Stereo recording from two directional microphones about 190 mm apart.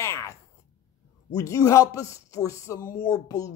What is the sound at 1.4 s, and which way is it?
Speech, 15° left (ahead or behind).